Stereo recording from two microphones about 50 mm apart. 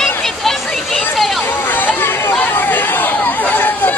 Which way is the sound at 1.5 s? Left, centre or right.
Left.